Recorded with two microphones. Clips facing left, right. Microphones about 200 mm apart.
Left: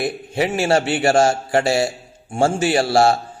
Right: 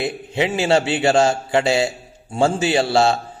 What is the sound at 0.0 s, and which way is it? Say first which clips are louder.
Speech: even; 20° right (ahead or behind).